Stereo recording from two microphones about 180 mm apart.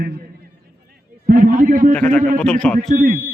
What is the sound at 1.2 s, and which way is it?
Speech, 50° right (ahead or behind).